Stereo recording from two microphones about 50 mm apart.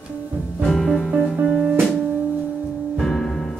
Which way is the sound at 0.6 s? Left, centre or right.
Centre.